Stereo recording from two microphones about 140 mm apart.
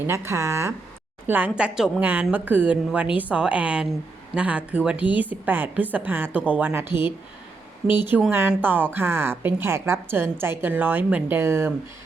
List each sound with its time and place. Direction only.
0.1 s a woman's voice: 20° right (ahead or behind)